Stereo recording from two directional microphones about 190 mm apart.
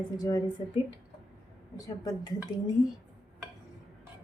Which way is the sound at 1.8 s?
20° left (ahead or behind).